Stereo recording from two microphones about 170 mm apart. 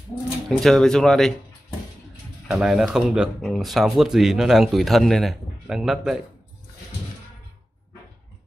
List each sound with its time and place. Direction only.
0.5 s speech: 5° left (ahead or behind)
2.4 s speech: centre (ahead or behind)